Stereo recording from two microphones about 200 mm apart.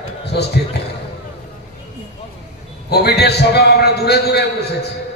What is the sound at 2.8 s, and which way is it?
A man's voice, 55° left (ahead or behind).